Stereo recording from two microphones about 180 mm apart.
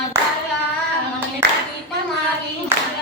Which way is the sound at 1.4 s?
70° right (ahead or behind).